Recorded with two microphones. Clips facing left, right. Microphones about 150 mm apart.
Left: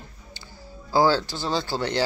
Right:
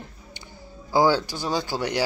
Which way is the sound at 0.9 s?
15° right (ahead or behind).